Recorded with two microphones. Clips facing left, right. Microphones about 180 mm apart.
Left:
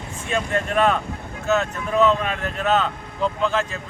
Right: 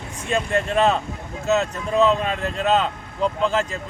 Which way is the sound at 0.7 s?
25° right (ahead or behind).